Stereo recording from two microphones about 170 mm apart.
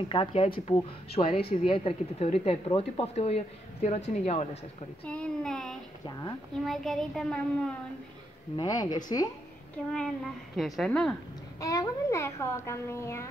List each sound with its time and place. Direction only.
0.1 s speech: 35° left (ahead or behind)
5.0 s a woman's voice: 5° left (ahead or behind)
6.0 s a woman's voice: 25° left (ahead or behind)
6.6 s a woman's voice: centre (ahead or behind)
8.5 s a woman's voice: 25° left (ahead or behind)
9.9 s a woman's voice: centre (ahead or behind)
11.6 s speech: 20° left (ahead or behind)